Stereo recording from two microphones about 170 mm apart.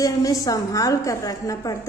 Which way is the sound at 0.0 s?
20° left (ahead or behind).